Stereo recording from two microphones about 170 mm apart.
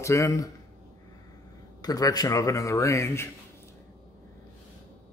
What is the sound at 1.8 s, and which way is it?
Speech, 20° left (ahead or behind).